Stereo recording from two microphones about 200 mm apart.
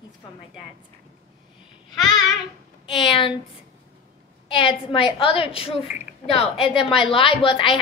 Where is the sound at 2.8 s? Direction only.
20° left (ahead or behind).